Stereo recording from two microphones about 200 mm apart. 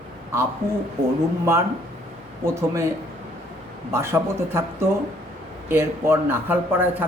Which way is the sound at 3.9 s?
15° right (ahead or behind).